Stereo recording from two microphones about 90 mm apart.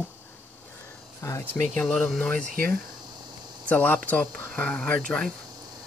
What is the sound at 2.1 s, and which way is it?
Speech, 10° left (ahead or behind).